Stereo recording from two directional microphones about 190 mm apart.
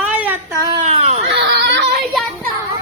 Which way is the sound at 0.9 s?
35° right (ahead or behind).